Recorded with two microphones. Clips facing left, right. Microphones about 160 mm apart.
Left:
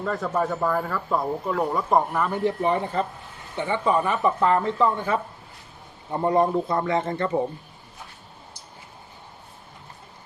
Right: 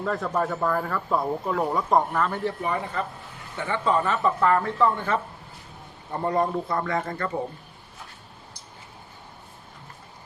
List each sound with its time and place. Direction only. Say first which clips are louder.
0.0 s speech: left 1 dB; centre (ahead or behind); by 2.6 s 15° left (ahead or behind)
2.6 s speech: left 4 dB; 30° left (ahead or behind)
3.6 s a man's voice: left 2 dB; 15° left (ahead or behind)